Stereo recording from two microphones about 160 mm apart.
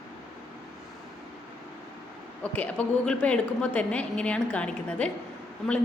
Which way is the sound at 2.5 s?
10° left (ahead or behind).